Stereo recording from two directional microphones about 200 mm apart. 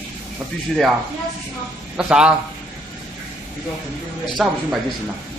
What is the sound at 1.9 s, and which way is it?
Speech, 5° right (ahead or behind).